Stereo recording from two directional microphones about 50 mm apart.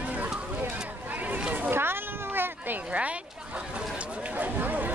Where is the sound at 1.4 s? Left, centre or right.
Right.